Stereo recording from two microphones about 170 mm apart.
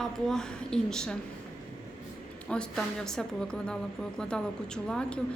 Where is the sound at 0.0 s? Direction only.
5° left (ahead or behind).